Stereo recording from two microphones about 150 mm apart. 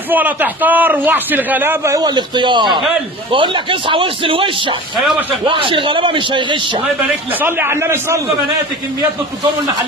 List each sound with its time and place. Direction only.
0.1 s a man's voice: 10° right (ahead or behind); by 6.8 s 35° right (ahead or behind)
7.4 s a man's voice: 15° right (ahead or behind)